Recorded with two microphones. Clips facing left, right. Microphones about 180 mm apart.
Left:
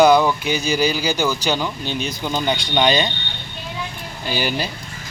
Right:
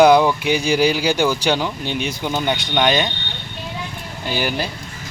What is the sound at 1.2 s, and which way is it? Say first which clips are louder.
Speech: right 2 dB; 15° right (ahead or behind).